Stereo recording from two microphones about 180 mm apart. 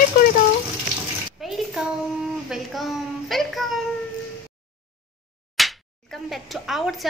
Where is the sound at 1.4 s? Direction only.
Centre (ahead or behind).